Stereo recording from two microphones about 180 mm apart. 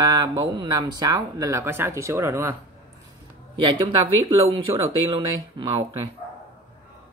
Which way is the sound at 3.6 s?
25° right (ahead or behind).